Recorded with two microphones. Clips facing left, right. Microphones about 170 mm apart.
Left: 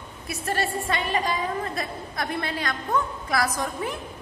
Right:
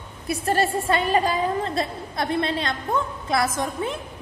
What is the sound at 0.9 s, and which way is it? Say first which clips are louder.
Speech: right 6 dB; 35° right (ahead or behind).